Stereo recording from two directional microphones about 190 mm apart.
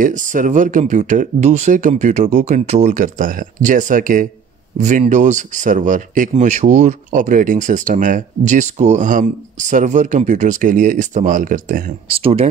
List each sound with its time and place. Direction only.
0.0 s speech: 45° right (ahead or behind)
12.1 s speech: 30° right (ahead or behind)